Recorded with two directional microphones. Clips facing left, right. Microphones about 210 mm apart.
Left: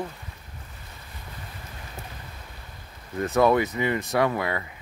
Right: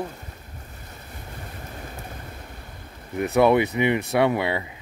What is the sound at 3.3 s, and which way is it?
Speech, 20° right (ahead or behind).